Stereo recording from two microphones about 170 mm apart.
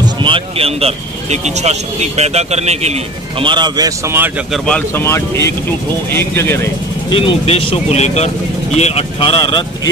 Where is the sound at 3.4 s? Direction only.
25° right (ahead or behind).